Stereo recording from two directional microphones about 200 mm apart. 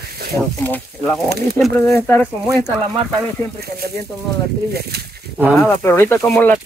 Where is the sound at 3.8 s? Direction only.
50° right (ahead or behind).